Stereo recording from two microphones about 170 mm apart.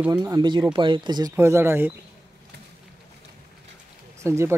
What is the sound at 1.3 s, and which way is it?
Speech, 15° right (ahead or behind).